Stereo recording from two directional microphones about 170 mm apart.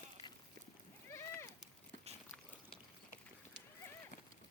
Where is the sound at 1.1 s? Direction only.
15° left (ahead or behind).